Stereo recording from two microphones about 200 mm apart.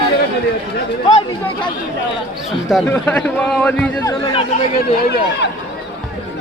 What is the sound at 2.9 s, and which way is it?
A man's voice, 5° left (ahead or behind).